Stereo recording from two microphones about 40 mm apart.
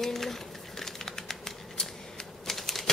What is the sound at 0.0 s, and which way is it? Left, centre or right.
Typewriter, centre.